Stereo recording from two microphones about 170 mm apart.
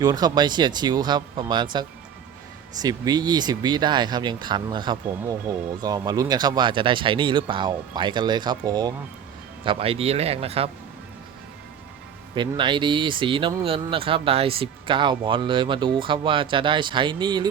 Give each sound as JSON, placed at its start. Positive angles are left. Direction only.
{"t": 0.0, "sound": "speech", "side_deg": -20}
{"t": 9.6, "sound": "speech", "side_deg": -35}
{"t": 12.3, "sound": "speech", "side_deg": -30}